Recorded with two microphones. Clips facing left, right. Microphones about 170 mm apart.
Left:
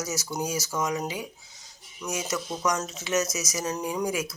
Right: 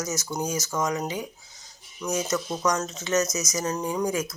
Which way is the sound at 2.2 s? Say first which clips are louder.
Even; 5° left (ahead or behind).